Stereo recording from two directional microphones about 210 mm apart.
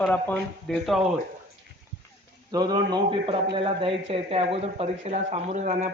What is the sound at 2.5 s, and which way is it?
A man's voice, 20° right (ahead or behind).